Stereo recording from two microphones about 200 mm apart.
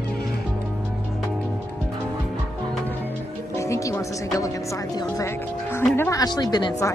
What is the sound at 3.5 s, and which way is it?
Speech, 15° left (ahead or behind).